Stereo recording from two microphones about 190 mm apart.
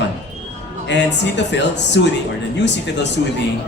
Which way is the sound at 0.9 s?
65° left (ahead or behind).